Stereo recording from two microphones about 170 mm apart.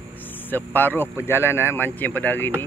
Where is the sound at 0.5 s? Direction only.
10° left (ahead or behind).